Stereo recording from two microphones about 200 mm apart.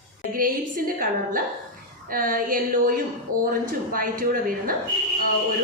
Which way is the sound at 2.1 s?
45° right (ahead or behind).